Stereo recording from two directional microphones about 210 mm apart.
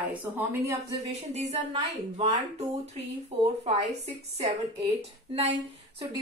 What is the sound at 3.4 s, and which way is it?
Speech, 30° right (ahead or behind).